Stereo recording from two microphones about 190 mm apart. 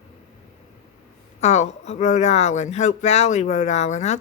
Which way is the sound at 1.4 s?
35° left (ahead or behind).